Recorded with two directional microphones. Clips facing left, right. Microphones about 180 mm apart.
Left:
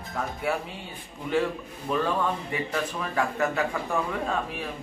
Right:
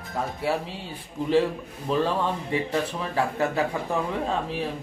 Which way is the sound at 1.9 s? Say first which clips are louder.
Right 2 dB; 30° right (ahead or behind).